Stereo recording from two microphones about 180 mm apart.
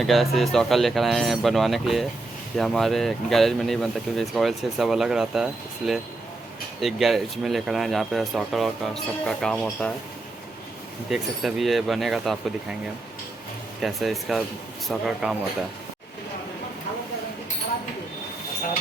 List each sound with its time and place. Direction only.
0.0 s speech: centre (ahead or behind)
11.1 s speech: centre (ahead or behind)
13.8 s speech: centre (ahead or behind)